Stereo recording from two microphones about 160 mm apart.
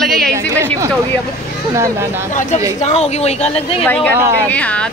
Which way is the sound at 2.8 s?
45° left (ahead or behind).